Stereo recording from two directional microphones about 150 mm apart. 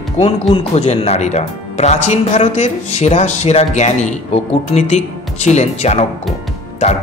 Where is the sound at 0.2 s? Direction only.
45° left (ahead or behind).